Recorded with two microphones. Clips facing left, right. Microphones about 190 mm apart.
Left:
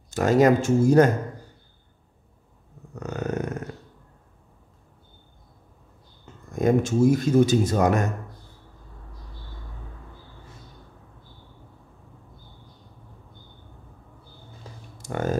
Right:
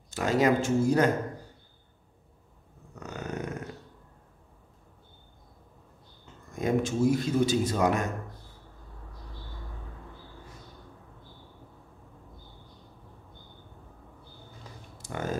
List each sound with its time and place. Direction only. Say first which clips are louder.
0.1 s a man's voice: left 6 dB; 45° left (ahead or behind)
3.0 s a sound: left 8 dB; 45° left (ahead or behind)
6.5 s a man's voice: left 6 dB; 45° left (ahead or behind)
15.0 s typing: left 7 dB; 50° left (ahead or behind)